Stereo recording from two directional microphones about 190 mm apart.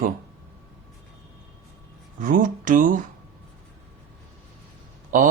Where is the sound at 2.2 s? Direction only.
45° right (ahead or behind).